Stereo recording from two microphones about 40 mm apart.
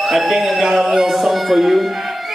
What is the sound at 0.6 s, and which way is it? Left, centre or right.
Music, centre.